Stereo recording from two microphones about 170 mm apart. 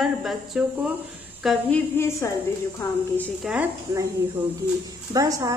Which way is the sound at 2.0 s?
15° left (ahead or behind).